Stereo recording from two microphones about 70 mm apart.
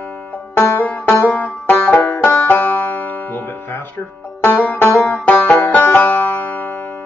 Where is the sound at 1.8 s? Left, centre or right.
Left.